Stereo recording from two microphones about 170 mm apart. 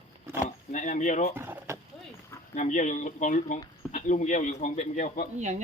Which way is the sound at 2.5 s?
50° left (ahead or behind).